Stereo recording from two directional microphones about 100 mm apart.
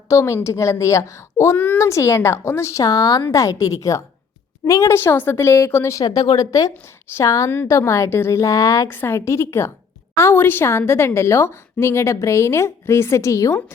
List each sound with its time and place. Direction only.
0.1 s speech: 30° left (ahead or behind)
1.5 s a child's voice: 15° left (ahead or behind)
1.8 s a woman's voice: 30° left (ahead or behind)
8.9 s a woman's voice: 25° left (ahead or behind)